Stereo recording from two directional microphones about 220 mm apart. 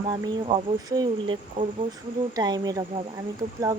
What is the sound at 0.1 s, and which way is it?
Speech, 15° right (ahead or behind).